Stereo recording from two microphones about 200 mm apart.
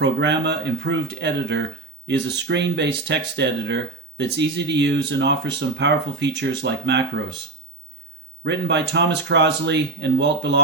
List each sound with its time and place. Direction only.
0.0 s speech: 60° right (ahead or behind)
8.4 s speech: 60° right (ahead or behind)